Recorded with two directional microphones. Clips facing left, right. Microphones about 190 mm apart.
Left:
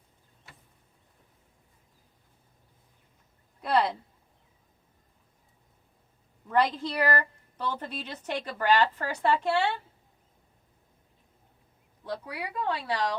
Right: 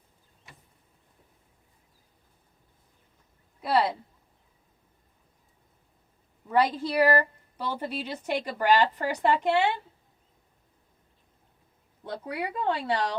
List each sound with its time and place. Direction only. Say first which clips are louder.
3.6 s a woman's voice: right 1 dB; 5° right (ahead or behind)
6.5 s a woman's voice: right 2 dB; 10° right (ahead or behind)
12.0 s speech: right 3 dB; 25° right (ahead or behind)